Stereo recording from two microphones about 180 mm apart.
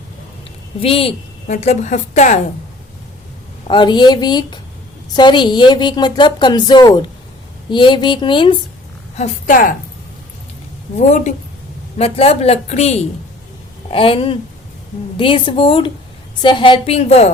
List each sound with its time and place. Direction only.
0.8 s a woman's voice: 30° left (ahead or behind)
3.7 s a woman's voice: 25° left (ahead or behind)
9.1 s a woman's voice: 45° left (ahead or behind)
10.9 s a woman's voice: 40° left (ahead or behind)